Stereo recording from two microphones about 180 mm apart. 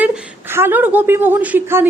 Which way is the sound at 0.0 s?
10° right (ahead or behind).